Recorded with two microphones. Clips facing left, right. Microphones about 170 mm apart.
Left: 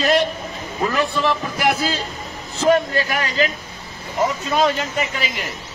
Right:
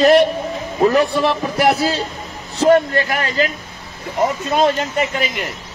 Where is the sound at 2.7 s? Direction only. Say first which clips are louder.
Right 3 dB; 55° right (ahead or behind).